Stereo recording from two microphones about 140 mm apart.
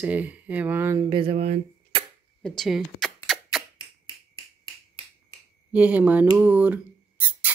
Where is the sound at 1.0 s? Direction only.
35° right (ahead or behind).